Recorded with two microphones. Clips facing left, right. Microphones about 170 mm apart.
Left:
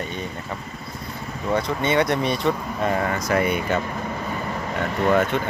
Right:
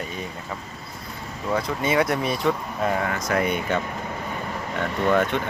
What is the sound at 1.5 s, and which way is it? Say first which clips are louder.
Speech: left 1 dB; 5° right (ahead or behind).